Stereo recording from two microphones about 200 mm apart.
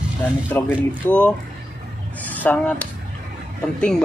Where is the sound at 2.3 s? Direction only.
10° left (ahead or behind).